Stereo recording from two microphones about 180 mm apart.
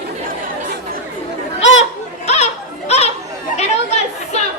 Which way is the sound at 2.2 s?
35° left (ahead or behind).